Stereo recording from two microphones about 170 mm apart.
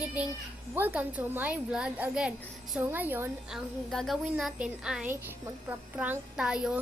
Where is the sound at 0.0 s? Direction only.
10° right (ahead or behind).